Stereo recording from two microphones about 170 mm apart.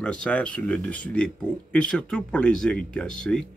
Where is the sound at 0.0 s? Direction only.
5° left (ahead or behind).